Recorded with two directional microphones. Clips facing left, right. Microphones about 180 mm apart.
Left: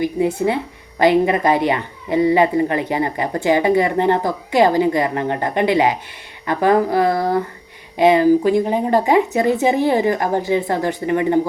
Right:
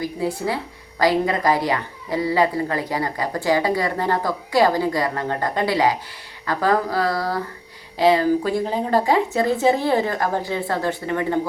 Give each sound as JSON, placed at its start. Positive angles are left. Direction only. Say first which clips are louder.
{"t": 0.0, "sound": "speech", "louder": "left 6 dB", "side_deg": 20}